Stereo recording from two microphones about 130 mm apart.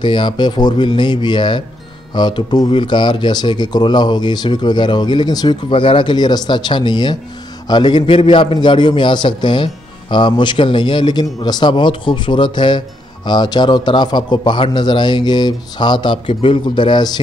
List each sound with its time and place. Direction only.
0.0 s a man's voice: 35° left (ahead or behind)